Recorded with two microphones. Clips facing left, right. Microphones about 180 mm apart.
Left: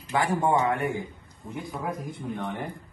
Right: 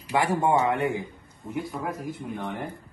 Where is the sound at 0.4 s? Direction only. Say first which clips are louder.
Right 1 dB; 20° right (ahead or behind).